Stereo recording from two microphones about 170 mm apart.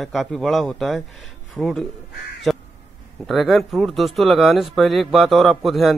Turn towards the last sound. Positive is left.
turn(degrees=0)  # may be behind; listen again after turning